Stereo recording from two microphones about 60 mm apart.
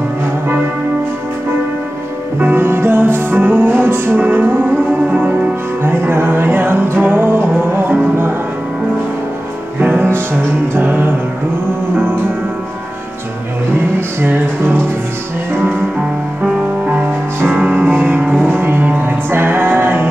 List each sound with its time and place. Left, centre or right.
2.4 s music: right
9.8 s music: right
13.9 s music: right
16.4 s music: right
17.6 s music: right